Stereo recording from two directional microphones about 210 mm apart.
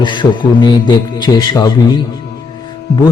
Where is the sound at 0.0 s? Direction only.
20° left (ahead or behind).